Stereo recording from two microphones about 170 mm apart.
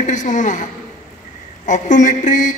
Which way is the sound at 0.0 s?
45° left (ahead or behind).